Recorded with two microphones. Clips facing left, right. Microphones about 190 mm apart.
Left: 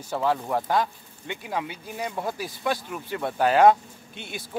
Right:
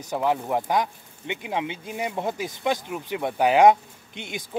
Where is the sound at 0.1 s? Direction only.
15° right (ahead or behind).